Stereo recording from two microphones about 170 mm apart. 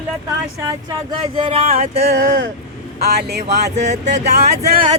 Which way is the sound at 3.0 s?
70° right (ahead or behind).